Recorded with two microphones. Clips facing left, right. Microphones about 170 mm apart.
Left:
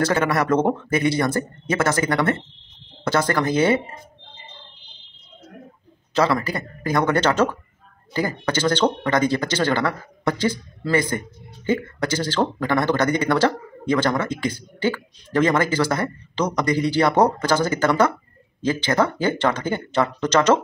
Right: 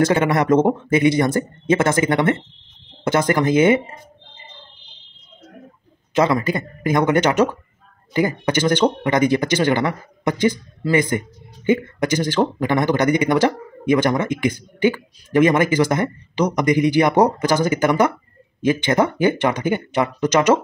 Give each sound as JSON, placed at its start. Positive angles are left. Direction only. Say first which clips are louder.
{"t": 0.0, "sound": "speech", "louder": "right 3 dB", "side_deg": -20}
{"t": 6.1, "sound": "speech", "louder": "right 3 dB", "side_deg": -20}